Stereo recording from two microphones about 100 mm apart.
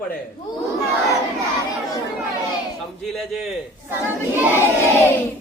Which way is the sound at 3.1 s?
Centre (ahead or behind).